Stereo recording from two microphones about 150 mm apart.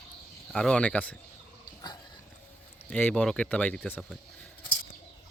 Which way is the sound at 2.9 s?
10° left (ahead or behind).